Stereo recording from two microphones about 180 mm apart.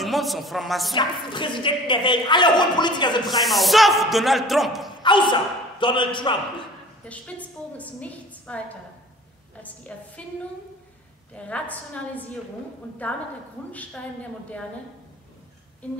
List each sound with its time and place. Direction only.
0.0 s speech: centre (ahead or behind)
0.9 s a woman's voice: 25° left (ahead or behind)
3.3 s speech: centre (ahead or behind)
5.0 s speech: 25° left (ahead or behind)
7.1 s a woman's voice: 10° left (ahead or behind)
11.3 s a woman's voice: 5° left (ahead or behind)
13.7 s a woman's voice: 10° left (ahead or behind)